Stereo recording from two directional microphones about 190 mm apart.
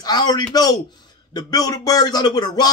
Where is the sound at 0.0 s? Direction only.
20° left (ahead or behind).